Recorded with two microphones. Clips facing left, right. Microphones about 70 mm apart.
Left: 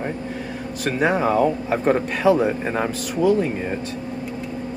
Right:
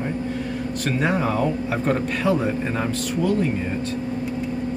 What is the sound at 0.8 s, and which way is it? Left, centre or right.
Speech, centre.